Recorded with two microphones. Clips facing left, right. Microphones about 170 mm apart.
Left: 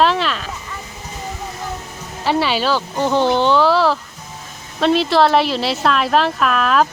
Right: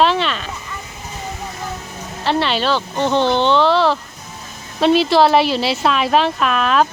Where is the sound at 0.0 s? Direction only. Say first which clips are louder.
Even; centre (ahead or behind).